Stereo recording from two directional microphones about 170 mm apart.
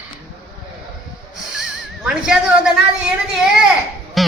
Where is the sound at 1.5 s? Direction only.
5° right (ahead or behind).